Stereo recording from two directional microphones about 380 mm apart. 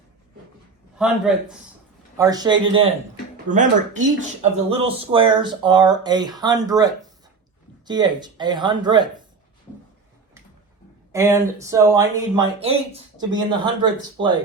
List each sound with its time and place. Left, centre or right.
0.9 s a man's voice: centre
11.1 s speech: centre